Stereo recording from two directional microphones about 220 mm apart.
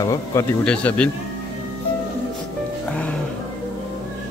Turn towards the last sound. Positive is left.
turn(degrees=5)  # may be behind; listen again after turning